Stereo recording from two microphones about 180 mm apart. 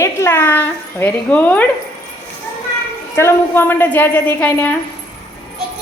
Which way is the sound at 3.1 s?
15° left (ahead or behind).